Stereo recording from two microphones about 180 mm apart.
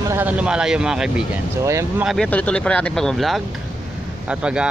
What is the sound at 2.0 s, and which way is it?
Speech, 5° left (ahead or behind).